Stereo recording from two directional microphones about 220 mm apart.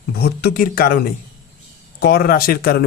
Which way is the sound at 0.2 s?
45° left (ahead or behind).